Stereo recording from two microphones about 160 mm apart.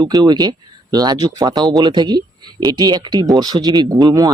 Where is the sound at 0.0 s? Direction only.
25° right (ahead or behind).